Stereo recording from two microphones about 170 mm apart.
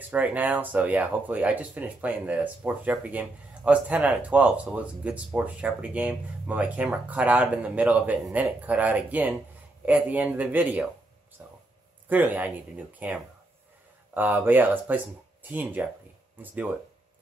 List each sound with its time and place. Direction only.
0.1 s speech: 10° right (ahead or behind)
11.4 s a sound: 10° right (ahead or behind)
12.1 s speech: 10° right (ahead or behind)